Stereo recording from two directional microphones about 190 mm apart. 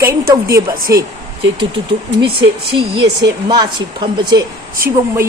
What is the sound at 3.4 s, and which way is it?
Speech, 25° right (ahead or behind).